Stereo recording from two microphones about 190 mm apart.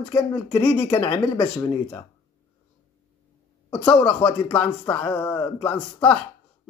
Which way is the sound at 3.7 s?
5° left (ahead or behind).